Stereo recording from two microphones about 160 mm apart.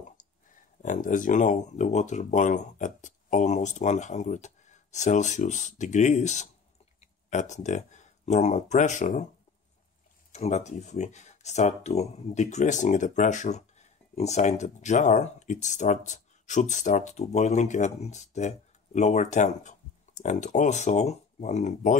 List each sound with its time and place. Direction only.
0.8 s speech: 55° left (ahead or behind)
10.3 s speech: 45° left (ahead or behind)